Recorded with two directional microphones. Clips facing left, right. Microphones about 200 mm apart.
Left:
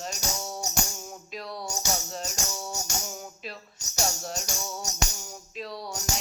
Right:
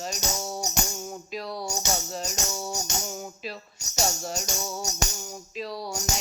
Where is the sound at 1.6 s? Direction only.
20° right (ahead or behind).